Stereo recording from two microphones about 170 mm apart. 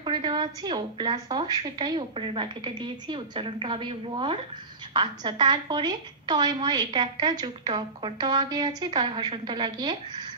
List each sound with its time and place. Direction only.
0.0 s a woman's voice: 25° right (ahead or behind)